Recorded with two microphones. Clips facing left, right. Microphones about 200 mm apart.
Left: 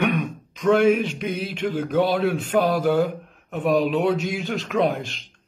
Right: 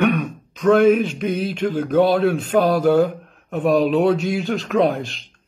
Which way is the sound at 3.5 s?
45° right (ahead or behind).